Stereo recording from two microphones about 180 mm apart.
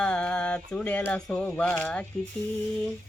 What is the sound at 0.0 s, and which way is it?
Music, 5° left (ahead or behind).